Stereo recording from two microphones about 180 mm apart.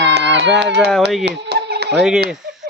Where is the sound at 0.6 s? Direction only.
70° right (ahead or behind).